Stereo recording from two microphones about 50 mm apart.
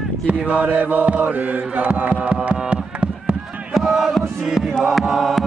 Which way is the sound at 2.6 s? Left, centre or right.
Right.